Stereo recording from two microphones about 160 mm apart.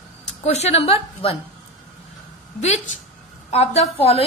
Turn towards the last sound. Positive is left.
turn(degrees=40)  # may be behind; listen again after turning